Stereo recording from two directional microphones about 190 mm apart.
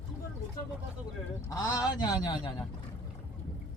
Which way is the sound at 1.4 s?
20° left (ahead or behind).